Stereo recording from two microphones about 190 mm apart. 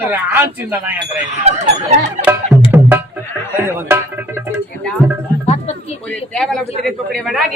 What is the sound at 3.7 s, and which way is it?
Speech, 10° right (ahead or behind).